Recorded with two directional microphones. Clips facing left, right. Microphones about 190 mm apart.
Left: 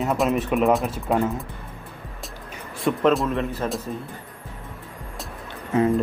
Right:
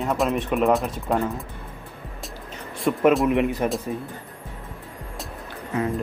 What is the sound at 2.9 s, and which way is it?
Speech, centre (ahead or behind).